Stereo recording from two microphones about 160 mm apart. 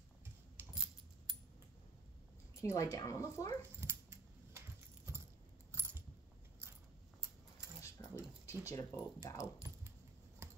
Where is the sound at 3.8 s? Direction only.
15° right (ahead or behind).